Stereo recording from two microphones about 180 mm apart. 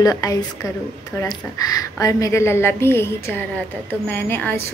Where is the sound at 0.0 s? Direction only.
20° left (ahead or behind).